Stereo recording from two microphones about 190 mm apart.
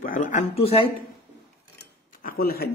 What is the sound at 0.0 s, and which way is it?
Speech, 45° left (ahead or behind).